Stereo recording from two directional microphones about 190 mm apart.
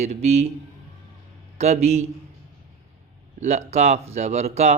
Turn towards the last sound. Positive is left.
turn(degrees=-35)  # may be behind; listen again after turning